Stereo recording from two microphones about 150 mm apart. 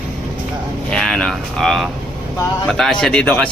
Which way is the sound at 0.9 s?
5° left (ahead or behind).